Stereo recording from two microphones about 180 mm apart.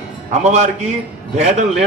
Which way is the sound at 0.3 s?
40° right (ahead or behind).